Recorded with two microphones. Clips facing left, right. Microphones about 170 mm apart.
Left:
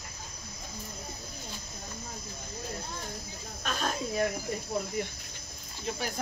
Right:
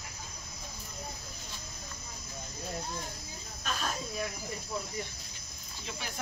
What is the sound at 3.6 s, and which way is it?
Snake, 55° left (ahead or behind).